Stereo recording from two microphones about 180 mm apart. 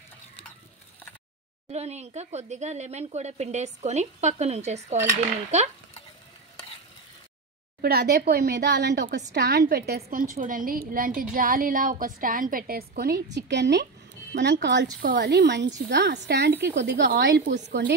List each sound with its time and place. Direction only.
1.7 s speech: 35° right (ahead or behind)
7.8 s speech: 60° right (ahead or behind)
10.1 s a woman's voice: 45° right (ahead or behind); by 13.4 s 60° right (ahead or behind)
13.5 s a woman's voice: 75° right (ahead or behind)